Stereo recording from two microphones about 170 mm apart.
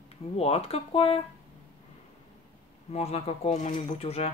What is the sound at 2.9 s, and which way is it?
Speech, 35° left (ahead or behind).